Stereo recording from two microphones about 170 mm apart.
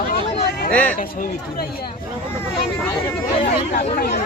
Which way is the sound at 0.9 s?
55° left (ahead or behind).